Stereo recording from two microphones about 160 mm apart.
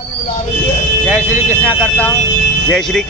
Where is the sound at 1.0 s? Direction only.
15° right (ahead or behind).